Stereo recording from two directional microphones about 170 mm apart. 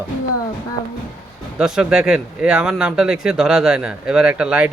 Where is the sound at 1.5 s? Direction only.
5° right (ahead or behind).